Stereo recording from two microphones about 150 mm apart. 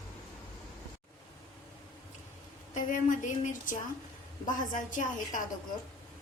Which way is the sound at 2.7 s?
60° left (ahead or behind).